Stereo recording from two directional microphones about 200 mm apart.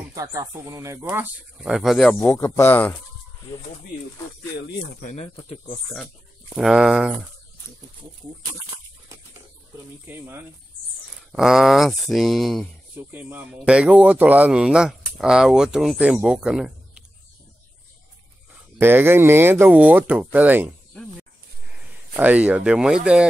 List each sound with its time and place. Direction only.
0.1 s speech: 15° right (ahead or behind); by 2.1 s centre (ahead or behind)
2.1 s speech: 15° left (ahead or behind)
5.0 s speech: 35° left (ahead or behind)
6.5 s speech: 5° right (ahead or behind)
10.0 s speech: 10° right (ahead or behind)
11.3 s speech: centre (ahead or behind)
13.1 s speech: 10° right (ahead or behind)
18.8 s speech: 10° right (ahead or behind)
22.1 s speech: 5° right (ahead or behind)